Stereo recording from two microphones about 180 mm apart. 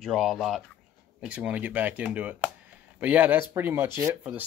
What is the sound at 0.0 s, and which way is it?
Speech, centre (ahead or behind).